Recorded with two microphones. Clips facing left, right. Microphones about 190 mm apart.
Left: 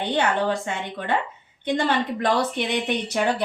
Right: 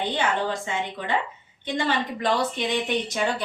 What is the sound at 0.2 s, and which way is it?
Speech, 60° left (ahead or behind).